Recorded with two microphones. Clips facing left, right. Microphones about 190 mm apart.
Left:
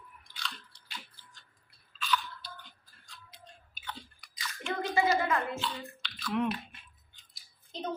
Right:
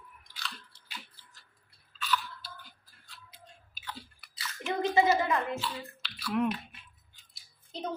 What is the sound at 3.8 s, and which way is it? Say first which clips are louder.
Biting: even; 5° right (ahead or behind).